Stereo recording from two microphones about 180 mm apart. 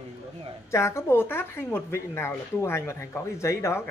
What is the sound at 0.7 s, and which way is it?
Speech, 15° left (ahead or behind).